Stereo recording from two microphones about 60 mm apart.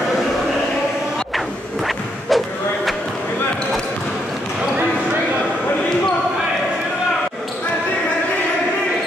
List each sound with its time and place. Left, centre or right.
2.2 s slam: centre